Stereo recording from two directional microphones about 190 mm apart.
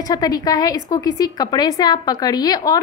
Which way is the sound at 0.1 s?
20° left (ahead or behind).